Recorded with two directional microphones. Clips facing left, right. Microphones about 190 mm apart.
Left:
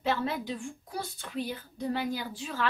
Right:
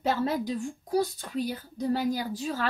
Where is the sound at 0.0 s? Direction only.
40° right (ahead or behind).